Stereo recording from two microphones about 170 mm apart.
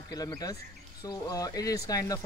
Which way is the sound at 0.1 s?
20° left (ahead or behind).